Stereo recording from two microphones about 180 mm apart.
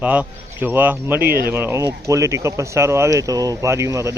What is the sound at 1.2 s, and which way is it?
Speech, 60° right (ahead or behind).